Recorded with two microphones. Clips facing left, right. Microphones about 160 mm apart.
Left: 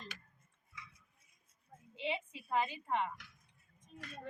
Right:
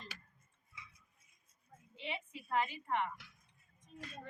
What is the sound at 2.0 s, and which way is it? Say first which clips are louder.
A woman's voice: left 5 dB; 20° left (ahead or behind).